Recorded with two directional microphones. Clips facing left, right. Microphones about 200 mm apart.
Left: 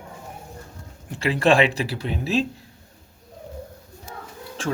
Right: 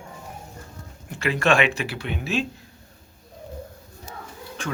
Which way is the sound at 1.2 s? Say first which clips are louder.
Left 3 dB; 30° left (ahead or behind).